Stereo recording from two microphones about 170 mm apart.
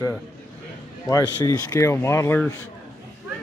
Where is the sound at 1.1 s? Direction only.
20° left (ahead or behind).